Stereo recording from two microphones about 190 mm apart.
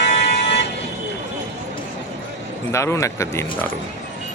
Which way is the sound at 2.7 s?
15° left (ahead or behind).